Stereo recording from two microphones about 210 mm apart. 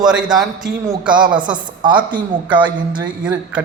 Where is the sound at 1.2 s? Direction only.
20° right (ahead or behind).